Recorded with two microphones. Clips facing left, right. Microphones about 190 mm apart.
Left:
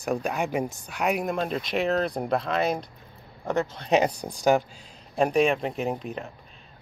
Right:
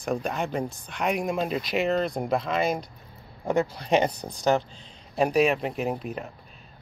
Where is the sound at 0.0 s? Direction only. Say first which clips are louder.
Left 1 dB; 5° left (ahead or behind).